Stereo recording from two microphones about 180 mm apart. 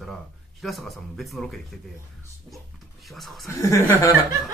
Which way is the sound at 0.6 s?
Centre (ahead or behind).